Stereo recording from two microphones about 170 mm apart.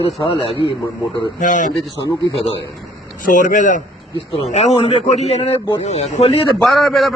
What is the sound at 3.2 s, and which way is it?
A man's voice, 50° left (ahead or behind).